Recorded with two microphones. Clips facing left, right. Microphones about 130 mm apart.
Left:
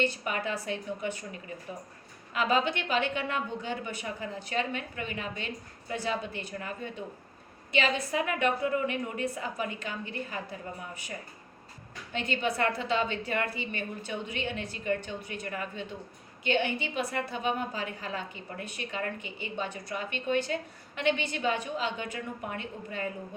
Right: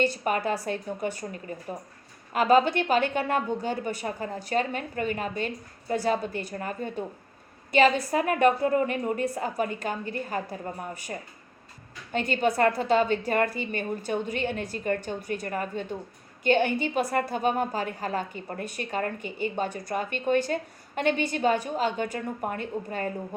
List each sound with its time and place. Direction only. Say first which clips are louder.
0.0 s a woman's voice: right 5 dB; 40° right (ahead or behind)